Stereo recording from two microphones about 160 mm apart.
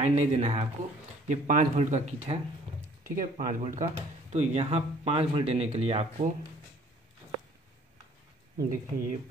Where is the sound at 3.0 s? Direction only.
55° right (ahead or behind); by 6.3 s 40° right (ahead or behind).